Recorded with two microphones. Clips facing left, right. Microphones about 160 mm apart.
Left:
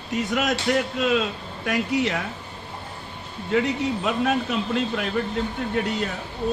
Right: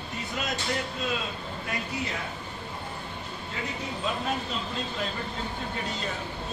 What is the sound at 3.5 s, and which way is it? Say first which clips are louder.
A man's voice: left 13 dB; 90° left.